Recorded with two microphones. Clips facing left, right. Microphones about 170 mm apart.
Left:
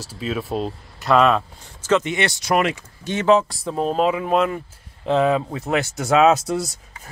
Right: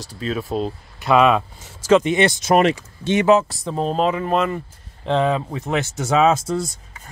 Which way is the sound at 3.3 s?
5° right (ahead or behind).